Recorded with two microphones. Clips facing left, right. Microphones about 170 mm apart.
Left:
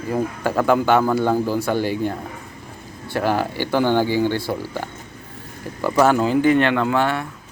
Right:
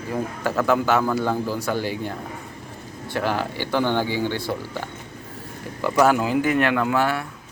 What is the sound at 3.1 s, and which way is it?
Speech, 10° left (ahead or behind).